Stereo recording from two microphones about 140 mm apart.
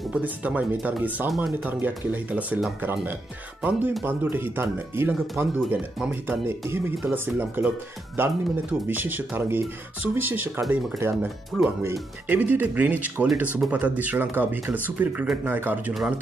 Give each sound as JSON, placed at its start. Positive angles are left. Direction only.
{"t": 0.1, "sound": "speech", "side_deg": -10}